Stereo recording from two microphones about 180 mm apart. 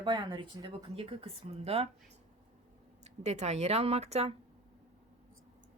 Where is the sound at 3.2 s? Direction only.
40° right (ahead or behind).